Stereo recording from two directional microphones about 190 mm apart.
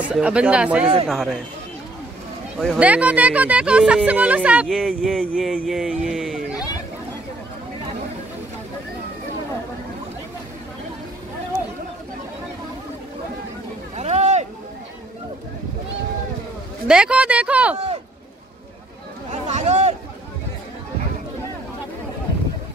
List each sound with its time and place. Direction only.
0.0 s speech: 5° right (ahead or behind)
2.6 s speech: 5° right (ahead or behind)
13.9 s boat: 35° right (ahead or behind)
16.8 s speech: 5° right (ahead or behind)
19.4 s a sound: 35° right (ahead or behind)